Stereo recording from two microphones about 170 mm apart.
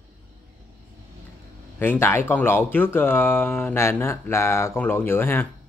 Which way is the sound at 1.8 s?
15° left (ahead or behind).